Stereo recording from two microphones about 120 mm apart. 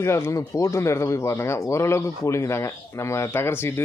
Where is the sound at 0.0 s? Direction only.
25° left (ahead or behind).